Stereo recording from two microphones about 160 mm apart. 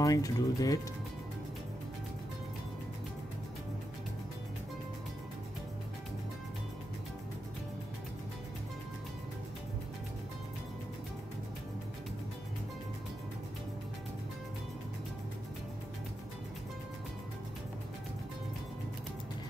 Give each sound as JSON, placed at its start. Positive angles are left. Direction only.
{"t": 0.0, "sound": "speech", "side_deg": 20}